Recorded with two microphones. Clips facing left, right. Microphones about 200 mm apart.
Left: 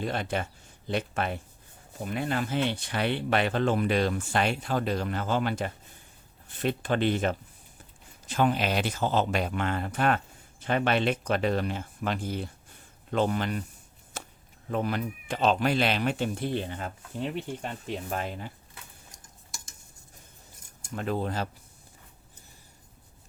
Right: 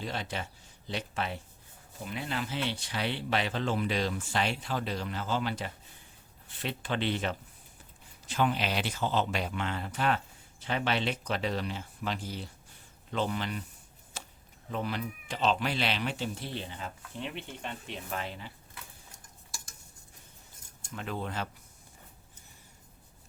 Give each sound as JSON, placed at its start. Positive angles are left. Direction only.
{"t": 0.0, "sound": "speech", "side_deg": 55}
{"t": 14.1, "sound": "a sound", "side_deg": 50}
{"t": 14.7, "sound": "speech", "side_deg": 50}
{"t": 19.5, "sound": "stir", "side_deg": 20}
{"t": 20.9, "sound": "speech", "side_deg": 40}